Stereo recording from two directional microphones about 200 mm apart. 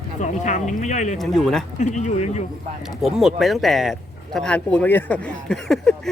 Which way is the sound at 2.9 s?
Centre (ahead or behind).